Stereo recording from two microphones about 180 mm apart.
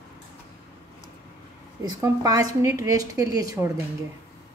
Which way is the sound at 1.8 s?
20° right (ahead or behind).